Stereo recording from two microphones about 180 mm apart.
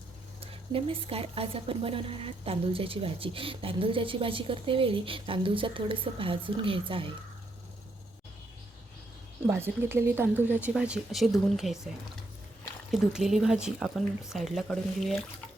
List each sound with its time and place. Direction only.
0.7 s a woman's voice: 30° right (ahead or behind)
9.5 s speech: 15° right (ahead or behind)
12.9 s speech: centre (ahead or behind)